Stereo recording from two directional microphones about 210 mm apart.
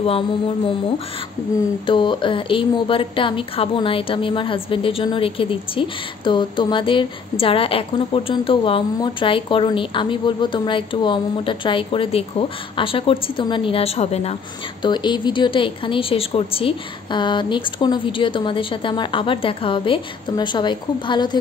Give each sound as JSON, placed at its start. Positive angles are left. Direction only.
{"t": 1.9, "sound": "a woman's voice", "side_deg": 25}